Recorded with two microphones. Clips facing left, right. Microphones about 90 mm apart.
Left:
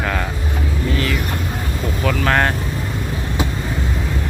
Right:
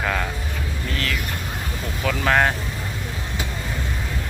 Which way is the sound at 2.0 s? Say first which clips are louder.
Left 1 dB; centre (ahead or behind).